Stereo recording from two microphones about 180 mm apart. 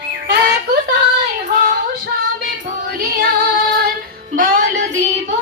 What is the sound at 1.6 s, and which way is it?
Female singing, 50° right (ahead or behind).